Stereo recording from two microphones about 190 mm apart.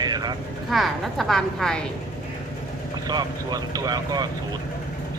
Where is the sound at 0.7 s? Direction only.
Centre (ahead or behind).